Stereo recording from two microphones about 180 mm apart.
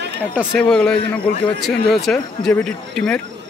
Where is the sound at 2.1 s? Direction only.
5° left (ahead or behind).